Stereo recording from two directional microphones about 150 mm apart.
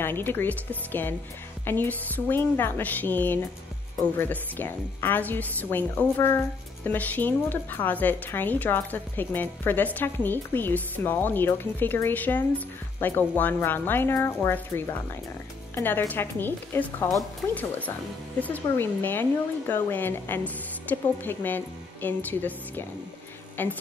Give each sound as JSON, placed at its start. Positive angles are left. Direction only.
{"t": 0.0, "sound": "a woman's voice", "side_deg": 15}
{"t": 18.4, "sound": "a woman's voice", "side_deg": 10}